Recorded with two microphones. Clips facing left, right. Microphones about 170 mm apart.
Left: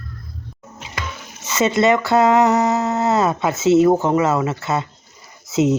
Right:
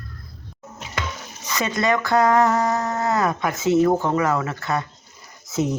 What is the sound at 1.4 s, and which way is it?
Speech, 25° left (ahead or behind).